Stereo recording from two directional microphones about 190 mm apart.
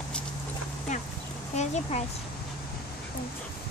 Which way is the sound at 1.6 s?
35° left (ahead or behind).